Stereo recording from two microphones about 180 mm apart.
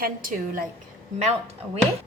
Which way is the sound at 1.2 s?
35° right (ahead or behind).